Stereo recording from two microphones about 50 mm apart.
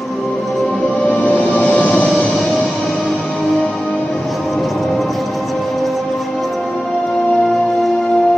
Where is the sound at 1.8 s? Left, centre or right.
Left.